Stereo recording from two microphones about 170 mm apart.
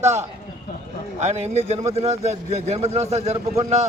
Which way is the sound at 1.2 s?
40° right (ahead or behind).